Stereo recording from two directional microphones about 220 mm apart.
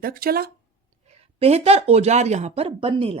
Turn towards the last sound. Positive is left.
turn(degrees=-25)  # may be behind; listen again after turning